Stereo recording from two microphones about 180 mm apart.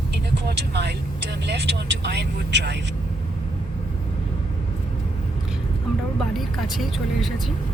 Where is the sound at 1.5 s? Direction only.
70° right (ahead or behind).